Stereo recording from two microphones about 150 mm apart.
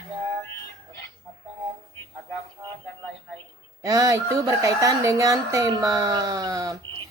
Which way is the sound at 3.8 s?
25° right (ahead or behind).